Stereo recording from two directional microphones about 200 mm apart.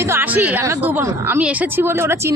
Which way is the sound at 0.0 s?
10° right (ahead or behind).